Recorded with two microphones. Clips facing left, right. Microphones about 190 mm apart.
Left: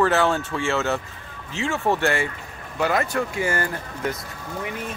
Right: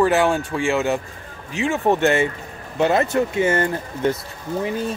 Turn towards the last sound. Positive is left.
turn(degrees=-30)  # may be behind; listen again after turning